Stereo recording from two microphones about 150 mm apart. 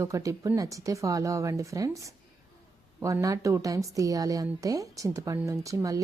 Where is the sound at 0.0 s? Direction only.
20° right (ahead or behind).